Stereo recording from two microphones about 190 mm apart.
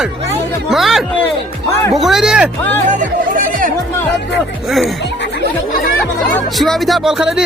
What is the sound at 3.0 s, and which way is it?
Speech, 45° right (ahead or behind).